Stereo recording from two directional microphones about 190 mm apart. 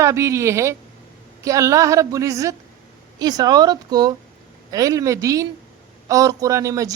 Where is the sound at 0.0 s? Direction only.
15° right (ahead or behind).